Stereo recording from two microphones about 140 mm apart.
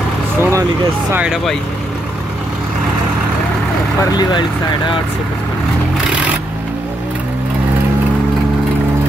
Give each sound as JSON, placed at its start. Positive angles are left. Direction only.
{"t": 0.4, "sound": "speech", "side_deg": -20}
{"t": 1.1, "sound": "speech", "side_deg": -5}
{"t": 4.1, "sound": "speech", "side_deg": 30}